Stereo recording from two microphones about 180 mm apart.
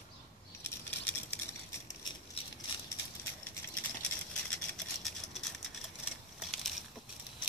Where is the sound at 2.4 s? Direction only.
30° left (ahead or behind).